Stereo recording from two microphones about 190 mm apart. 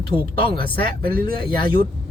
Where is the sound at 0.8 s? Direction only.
50° right (ahead or behind).